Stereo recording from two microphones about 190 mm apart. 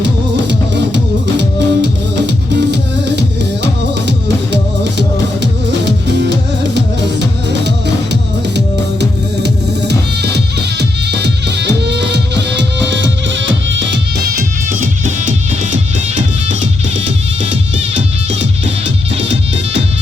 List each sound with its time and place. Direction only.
0.0 s music: 65° right (ahead or behind)
8.1 s music: 65° right (ahead or behind)
14.7 s music: 45° right (ahead or behind)